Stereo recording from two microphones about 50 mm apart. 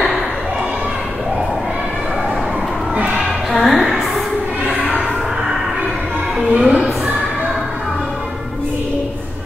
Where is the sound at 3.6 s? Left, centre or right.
Centre.